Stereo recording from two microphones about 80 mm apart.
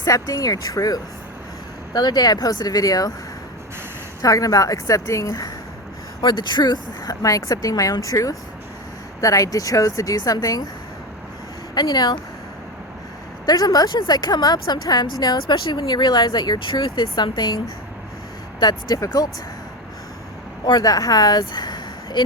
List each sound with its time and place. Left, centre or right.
0.0 s a woman's voice: left
1.9 s a woman's voice: left
4.2 s a woman's voice: left
6.2 s a woman's voice: left
11.7 s speech: left
13.4 s a woman's voice: left
15.8 s speech: left
18.6 s speech: left
18.9 s a woman's voice: left
20.7 s speech: left